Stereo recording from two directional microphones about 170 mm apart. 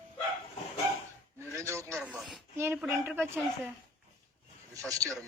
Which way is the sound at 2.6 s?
15° right (ahead or behind).